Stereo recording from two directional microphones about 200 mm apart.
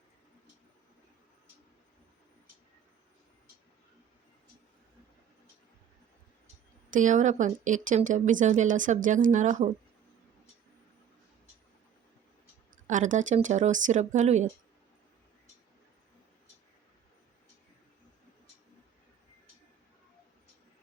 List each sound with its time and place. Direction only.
6.9 s a woman's voice: 40° right (ahead or behind)
12.7 s a woman's voice: 40° right (ahead or behind)